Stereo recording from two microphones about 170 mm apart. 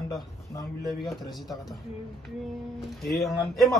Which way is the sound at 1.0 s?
Centre (ahead or behind).